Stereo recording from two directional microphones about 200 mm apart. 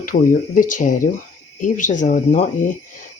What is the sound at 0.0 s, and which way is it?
Speech, 45° left (ahead or behind).